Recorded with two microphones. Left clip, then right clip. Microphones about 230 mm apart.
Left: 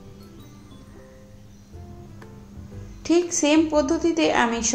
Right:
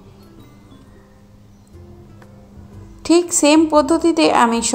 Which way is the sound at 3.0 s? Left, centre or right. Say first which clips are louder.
Right 6 dB; centre.